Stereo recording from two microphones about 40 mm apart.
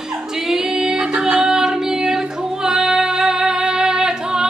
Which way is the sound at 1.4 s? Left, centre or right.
Centre.